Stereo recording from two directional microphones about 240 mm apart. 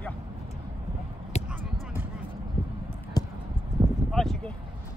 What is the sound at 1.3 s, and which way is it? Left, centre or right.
Basketball bounce, left.